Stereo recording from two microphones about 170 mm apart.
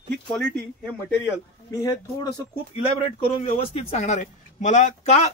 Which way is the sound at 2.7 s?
35° left (ahead or behind).